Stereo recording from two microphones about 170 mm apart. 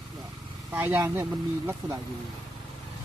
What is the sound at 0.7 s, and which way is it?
Speech, 10° right (ahead or behind).